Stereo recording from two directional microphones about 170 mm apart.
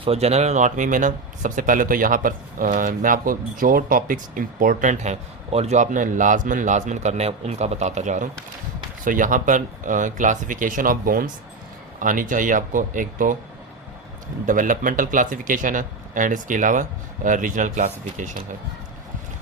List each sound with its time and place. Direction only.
0.0 s speech: 35° right (ahead or behind)
14.4 s speech: 50° right (ahead or behind)